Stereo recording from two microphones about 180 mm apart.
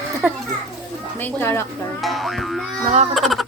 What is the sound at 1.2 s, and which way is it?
Speech, 15° left (ahead or behind).